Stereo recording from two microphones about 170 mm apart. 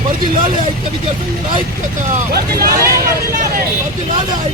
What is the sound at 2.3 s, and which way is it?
Speech, 60° right (ahead or behind).